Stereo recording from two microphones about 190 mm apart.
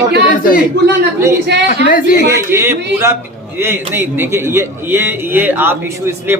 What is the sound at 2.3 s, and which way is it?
A man's voice, 15° right (ahead or behind).